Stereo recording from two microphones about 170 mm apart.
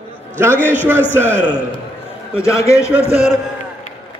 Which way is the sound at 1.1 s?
15° right (ahead or behind).